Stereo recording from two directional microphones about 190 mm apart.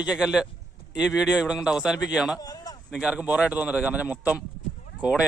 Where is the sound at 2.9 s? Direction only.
5° right (ahead or behind).